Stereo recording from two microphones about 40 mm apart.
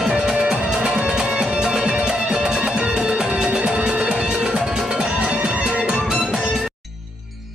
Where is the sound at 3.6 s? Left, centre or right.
Right.